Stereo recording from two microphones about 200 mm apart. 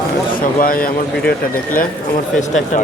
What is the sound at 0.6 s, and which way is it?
Speech, 45° left (ahead or behind).